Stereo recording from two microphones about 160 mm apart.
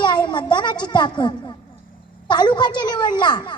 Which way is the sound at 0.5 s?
30° left (ahead or behind).